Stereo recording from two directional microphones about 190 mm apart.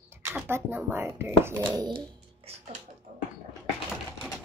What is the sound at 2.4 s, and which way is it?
Bathtub, 30° right (ahead or behind).